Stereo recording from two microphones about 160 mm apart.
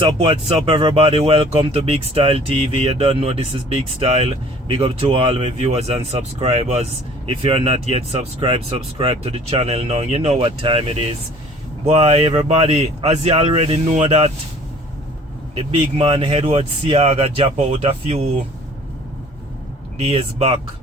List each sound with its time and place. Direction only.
0.0 s speech: 35° right (ahead or behind)
15.5 s speech: 40° right (ahead or behind)
20.0 s speech: 40° right (ahead or behind)